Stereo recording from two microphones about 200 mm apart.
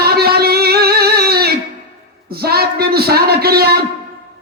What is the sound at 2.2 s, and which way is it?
A man's voice, 50° right (ahead or behind).